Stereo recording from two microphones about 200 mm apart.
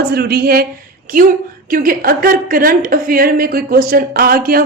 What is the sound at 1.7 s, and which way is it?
A woman's voice, 45° right (ahead or behind).